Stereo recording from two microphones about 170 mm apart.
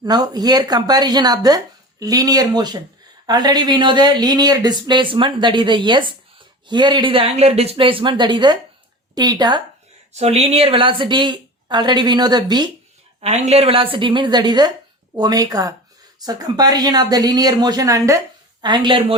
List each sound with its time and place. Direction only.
0.0 s speech: 25° right (ahead or behind)
10.1 s speech: 40° right (ahead or behind)
13.2 s speech: 40° right (ahead or behind)